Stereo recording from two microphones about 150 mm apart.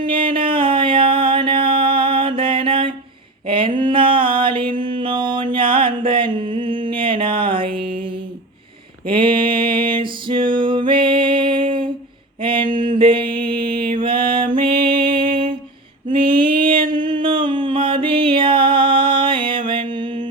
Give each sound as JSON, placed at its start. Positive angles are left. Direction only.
{"t": 0.0, "sound": "a sound", "side_deg": -35}
{"t": 3.4, "sound": "mantra", "side_deg": -35}
{"t": 9.0, "sound": "music", "side_deg": -35}
{"t": 12.4, "sound": "a sound", "side_deg": -35}
{"t": 14.0, "sound": "music", "side_deg": -35}
{"t": 16.0, "sound": "mantra", "side_deg": -35}
{"t": 17.2, "sound": "music", "side_deg": -30}